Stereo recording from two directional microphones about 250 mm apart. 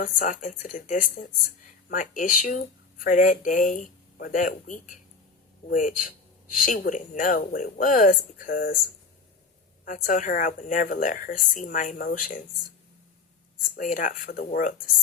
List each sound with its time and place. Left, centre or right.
0.0 s speech: left
9.8 s speech: left
13.6 s speech: left